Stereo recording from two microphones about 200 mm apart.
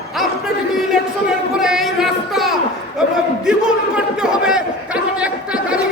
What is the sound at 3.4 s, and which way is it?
Chatter, 5° right (ahead or behind).